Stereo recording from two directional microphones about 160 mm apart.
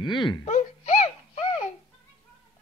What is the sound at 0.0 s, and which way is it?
Speech, 30° left (ahead or behind).